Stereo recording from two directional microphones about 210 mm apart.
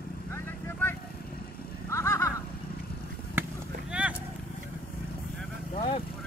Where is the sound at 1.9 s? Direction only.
15° left (ahead or behind).